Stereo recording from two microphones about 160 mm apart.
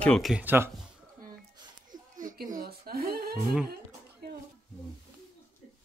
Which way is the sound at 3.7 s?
75° right (ahead or behind).